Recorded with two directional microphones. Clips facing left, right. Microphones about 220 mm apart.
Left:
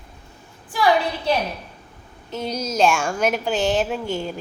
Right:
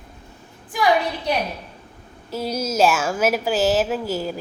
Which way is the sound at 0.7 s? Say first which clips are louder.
Even; 15° right (ahead or behind).